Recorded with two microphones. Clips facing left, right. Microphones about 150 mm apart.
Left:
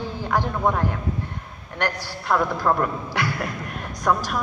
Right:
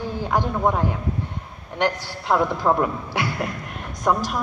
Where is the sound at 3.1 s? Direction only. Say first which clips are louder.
Even; 20° right (ahead or behind).